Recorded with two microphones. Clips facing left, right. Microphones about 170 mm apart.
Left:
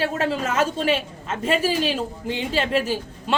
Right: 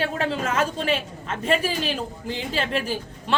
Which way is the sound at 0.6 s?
30° left (ahead or behind).